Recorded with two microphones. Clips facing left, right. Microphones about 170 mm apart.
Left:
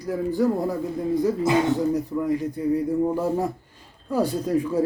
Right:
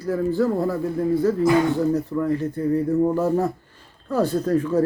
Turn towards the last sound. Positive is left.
turn(degrees=10)  # may be behind; listen again after turning